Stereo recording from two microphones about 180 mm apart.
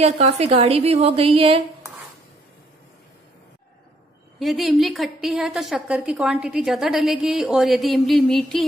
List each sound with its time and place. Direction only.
0.0 s a woman's voice: 35° right (ahead or behind)
4.4 s a woman's voice: centre (ahead or behind)